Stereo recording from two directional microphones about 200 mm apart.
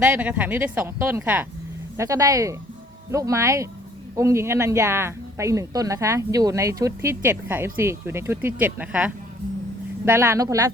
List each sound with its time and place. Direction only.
0.0 s speech: 5° right (ahead or behind)